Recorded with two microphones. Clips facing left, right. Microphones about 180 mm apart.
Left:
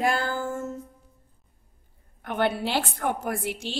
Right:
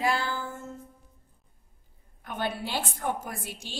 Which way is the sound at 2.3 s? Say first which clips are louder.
Left 7 dB; 70° left (ahead or behind).